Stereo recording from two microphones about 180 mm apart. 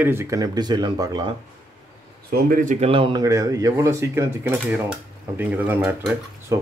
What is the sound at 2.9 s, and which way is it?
Speech, 30° right (ahead or behind).